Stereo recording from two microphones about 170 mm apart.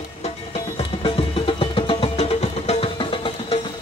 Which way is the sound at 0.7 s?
30° left (ahead or behind).